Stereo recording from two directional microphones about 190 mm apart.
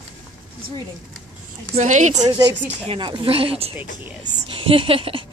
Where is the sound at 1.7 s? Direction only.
40° right (ahead or behind).